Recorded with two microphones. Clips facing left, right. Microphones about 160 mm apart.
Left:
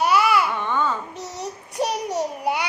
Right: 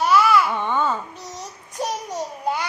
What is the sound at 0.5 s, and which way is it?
Babbling, 15° right (ahead or behind).